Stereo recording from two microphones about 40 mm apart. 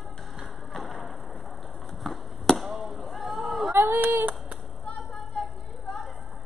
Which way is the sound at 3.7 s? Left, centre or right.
Right.